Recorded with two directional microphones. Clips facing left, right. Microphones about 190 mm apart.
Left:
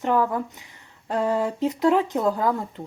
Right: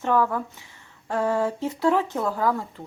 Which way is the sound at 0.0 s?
15° left (ahead or behind).